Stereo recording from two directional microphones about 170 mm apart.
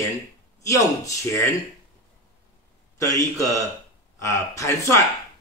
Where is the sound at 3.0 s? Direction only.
20° left (ahead or behind).